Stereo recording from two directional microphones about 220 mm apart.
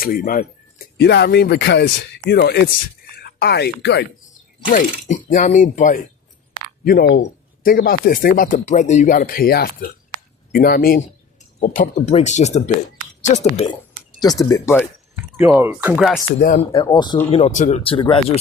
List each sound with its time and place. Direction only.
0.0 s speech: 40° left (ahead or behind)
4.7 s speech: 35° left (ahead or behind)
14.2 s speech: 15° left (ahead or behind)
15.4 s speech: 10° right (ahead or behind)
16.7 s speech: 20° left (ahead or behind)